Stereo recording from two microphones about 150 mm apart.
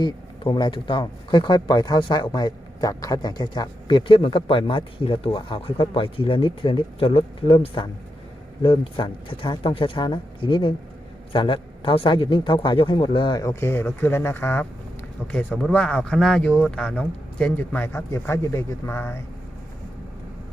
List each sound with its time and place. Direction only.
0.0 s a man's voice: 30° left (ahead or behind)